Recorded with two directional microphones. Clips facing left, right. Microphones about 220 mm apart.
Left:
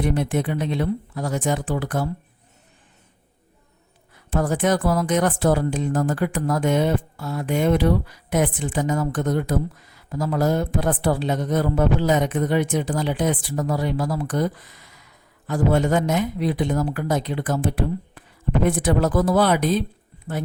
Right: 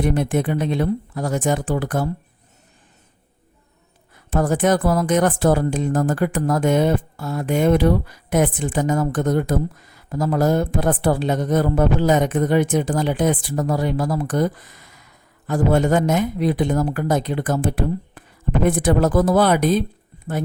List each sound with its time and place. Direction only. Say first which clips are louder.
0.0 s speech: right 3 dB; 50° right (ahead or behind)
4.1 s speech: right 3 dB; 50° right (ahead or behind)